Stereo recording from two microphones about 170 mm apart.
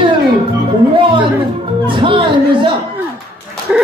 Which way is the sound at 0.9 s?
30° right (ahead or behind).